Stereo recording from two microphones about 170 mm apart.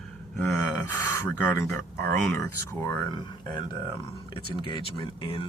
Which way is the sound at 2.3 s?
15° left (ahead or behind).